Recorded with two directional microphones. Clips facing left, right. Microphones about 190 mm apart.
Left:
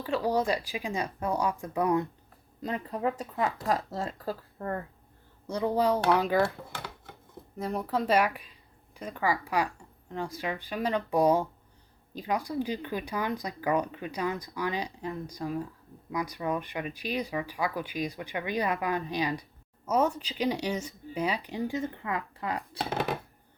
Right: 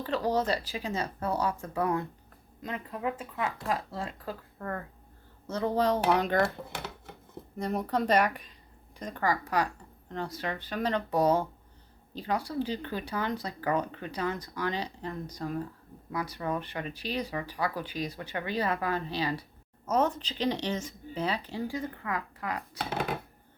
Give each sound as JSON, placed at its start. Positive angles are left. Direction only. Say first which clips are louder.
{"t": 0.0, "sound": "speech", "louder": "left 1 dB", "side_deg": 10}
{"t": 2.6, "sound": "speech", "louder": "left 4 dB", "side_deg": 35}
{"t": 5.5, "sound": "speech", "louder": "left 1 dB", "side_deg": 15}
{"t": 7.6, "sound": "speech", "louder": "right 1 dB", "side_deg": 0}